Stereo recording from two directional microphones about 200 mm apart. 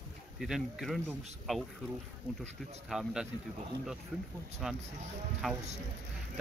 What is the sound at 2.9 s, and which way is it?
Speech, centre (ahead or behind).